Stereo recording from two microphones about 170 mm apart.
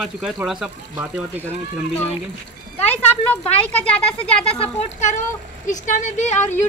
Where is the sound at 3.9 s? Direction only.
10° left (ahead or behind).